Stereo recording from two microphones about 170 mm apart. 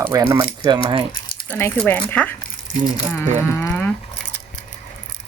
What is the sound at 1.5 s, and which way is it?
Speech, 10° left (ahead or behind).